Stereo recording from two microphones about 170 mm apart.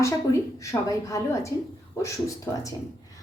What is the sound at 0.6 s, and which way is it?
A woman's voice, 20° left (ahead or behind).